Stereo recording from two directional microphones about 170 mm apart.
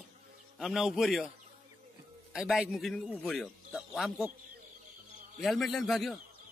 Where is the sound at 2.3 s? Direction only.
Centre (ahead or behind).